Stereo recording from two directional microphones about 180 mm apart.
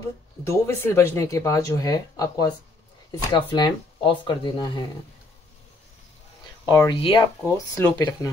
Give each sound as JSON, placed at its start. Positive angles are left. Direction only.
{"t": 0.4, "sound": "speech", "side_deg": 15}
{"t": 6.7, "sound": "speech", "side_deg": 20}
{"t": 7.4, "sound": "speech", "side_deg": 15}